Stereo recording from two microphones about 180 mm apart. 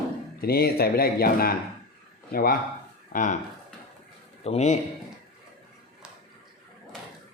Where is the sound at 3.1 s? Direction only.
45° left (ahead or behind).